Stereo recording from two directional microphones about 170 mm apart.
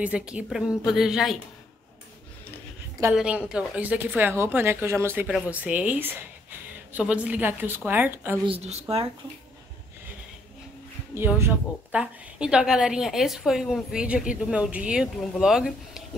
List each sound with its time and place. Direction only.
0.0 s a woman's voice: 5° right (ahead or behind)
3.0 s a woman's voice: 10° right (ahead or behind)
8.5 s a woman's voice: 40° right (ahead or behind)
11.1 s a woman's voice: 15° right (ahead or behind)